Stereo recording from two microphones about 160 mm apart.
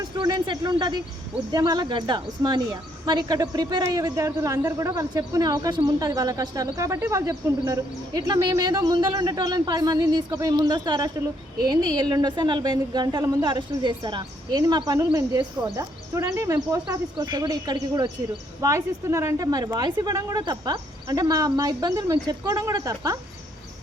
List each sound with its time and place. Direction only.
0.0 s speech: 30° right (ahead or behind)